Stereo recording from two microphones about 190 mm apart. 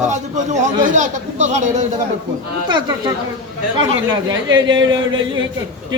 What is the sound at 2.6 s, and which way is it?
Speech, 25° right (ahead or behind).